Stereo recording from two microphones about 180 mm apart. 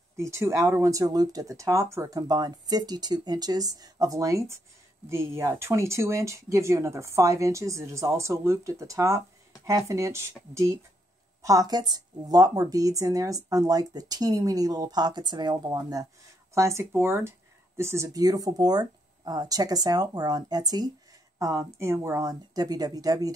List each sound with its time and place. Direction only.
0.2 s a woman's voice: 15° right (ahead or behind)